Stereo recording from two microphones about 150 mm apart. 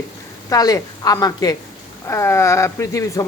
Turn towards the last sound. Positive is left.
turn(degrees=20)  # may be behind; listen again after turning